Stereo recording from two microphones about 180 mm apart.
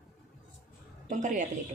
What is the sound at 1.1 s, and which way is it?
Speech, 45° right (ahead or behind).